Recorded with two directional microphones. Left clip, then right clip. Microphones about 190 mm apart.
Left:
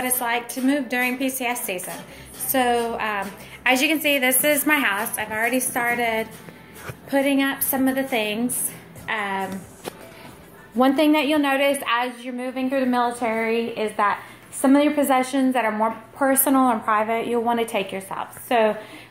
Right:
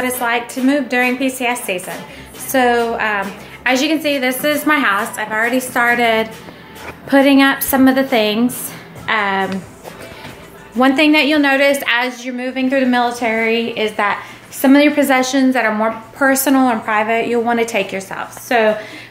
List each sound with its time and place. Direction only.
0.0 s a woman's voice: centre (ahead or behind)
5.9 s a woman's voice: 25° right (ahead or behind)
7.1 s a woman's voice: 35° right (ahead or behind)
10.8 s a woman's voice: 10° left (ahead or behind)
11.1 s a woman's voice: 5° right (ahead or behind)